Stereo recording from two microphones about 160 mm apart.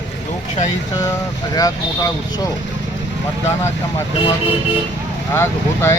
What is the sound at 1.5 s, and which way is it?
Speech, 20° left (ahead or behind).